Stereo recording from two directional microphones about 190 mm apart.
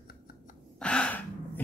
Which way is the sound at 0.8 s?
5° left (ahead or behind).